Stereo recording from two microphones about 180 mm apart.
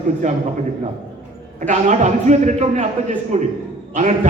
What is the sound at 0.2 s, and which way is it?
Speech, 40° right (ahead or behind).